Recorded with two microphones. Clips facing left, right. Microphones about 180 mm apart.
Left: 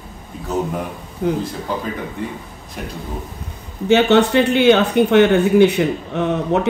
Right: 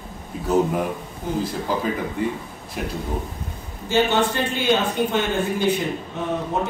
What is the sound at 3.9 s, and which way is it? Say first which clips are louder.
Speech: left 7 dB; 70° left (ahead or behind).